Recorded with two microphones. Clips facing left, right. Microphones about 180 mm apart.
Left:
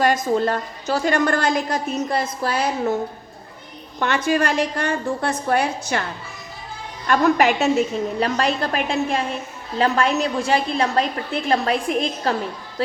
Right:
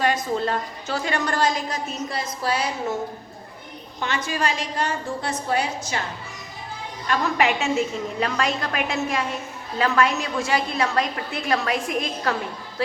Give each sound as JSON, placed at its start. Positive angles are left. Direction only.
{"t": 0.0, "sound": "a woman's voice", "side_deg": 45}
{"t": 4.0, "sound": "a woman's voice", "side_deg": 60}
{"t": 7.1, "sound": "a woman's voice", "side_deg": 45}